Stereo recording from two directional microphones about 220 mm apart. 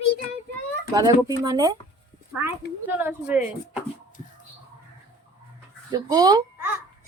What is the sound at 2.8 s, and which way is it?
Speech, 10° right (ahead or behind).